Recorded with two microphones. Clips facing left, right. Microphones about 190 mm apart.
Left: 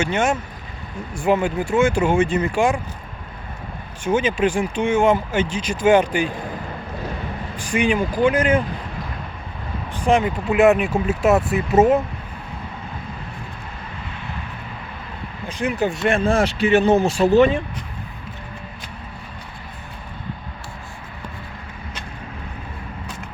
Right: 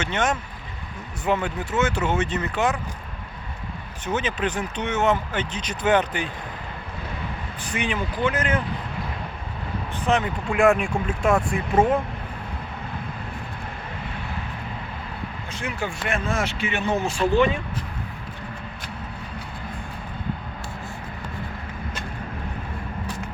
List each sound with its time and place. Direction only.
0.0 s speech: 10° left (ahead or behind)
4.0 s speech: 10° left (ahead or behind)
7.7 s speech: 15° left (ahead or behind)
10.0 s speech: 10° left (ahead or behind)
15.5 s speech: 20° left (ahead or behind); by 17.6 s 35° left (ahead or behind)